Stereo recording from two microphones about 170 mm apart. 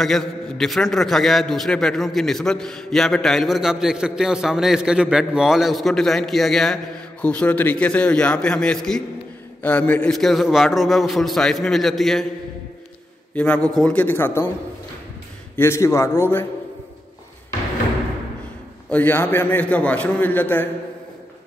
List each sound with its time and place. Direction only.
0.0 s a man's voice: centre (ahead or behind)
13.3 s a man's voice: 10° left (ahead or behind)
15.5 s a man's voice: 15° left (ahead or behind)
18.9 s a man's voice: 10° left (ahead or behind)